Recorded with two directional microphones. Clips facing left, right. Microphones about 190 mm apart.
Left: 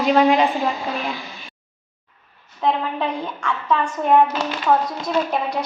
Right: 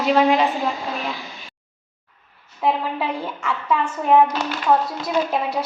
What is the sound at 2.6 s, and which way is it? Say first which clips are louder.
A woman's voice: even; 5° right (ahead or behind).